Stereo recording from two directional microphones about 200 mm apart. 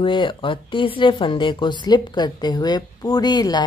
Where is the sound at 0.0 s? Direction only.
25° left (ahead or behind).